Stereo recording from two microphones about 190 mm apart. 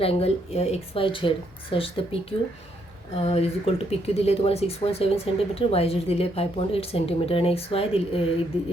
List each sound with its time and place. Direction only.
0.0 s speech: 30° left (ahead or behind)